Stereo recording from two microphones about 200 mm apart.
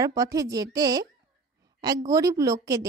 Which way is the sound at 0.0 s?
15° right (ahead or behind).